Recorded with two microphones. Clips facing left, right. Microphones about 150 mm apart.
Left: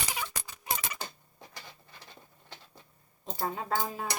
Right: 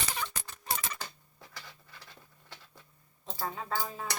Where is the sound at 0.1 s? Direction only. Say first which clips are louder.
Even; 10° left (ahead or behind).